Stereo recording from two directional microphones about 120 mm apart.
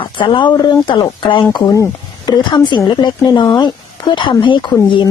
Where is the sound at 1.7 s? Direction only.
30° left (ahead or behind).